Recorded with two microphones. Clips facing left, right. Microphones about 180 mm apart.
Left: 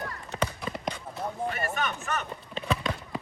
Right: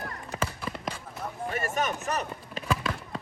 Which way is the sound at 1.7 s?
40° right (ahead or behind).